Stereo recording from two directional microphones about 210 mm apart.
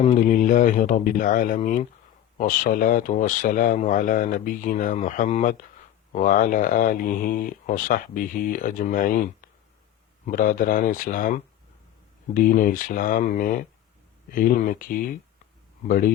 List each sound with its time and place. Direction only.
0.0 s speech: 35° left (ahead or behind)